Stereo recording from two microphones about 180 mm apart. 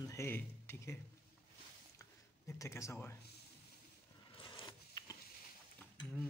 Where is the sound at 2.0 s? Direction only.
15° left (ahead or behind).